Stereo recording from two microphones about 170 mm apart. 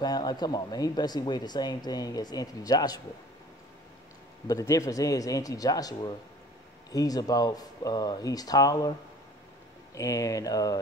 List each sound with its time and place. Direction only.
0.0 s speech: 25° left (ahead or behind)
4.5 s speech: 20° left (ahead or behind)
9.9 s speech: 20° left (ahead or behind)